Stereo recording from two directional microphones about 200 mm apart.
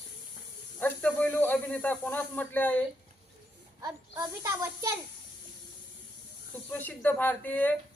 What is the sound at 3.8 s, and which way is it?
A child's voice, 15° right (ahead or behind).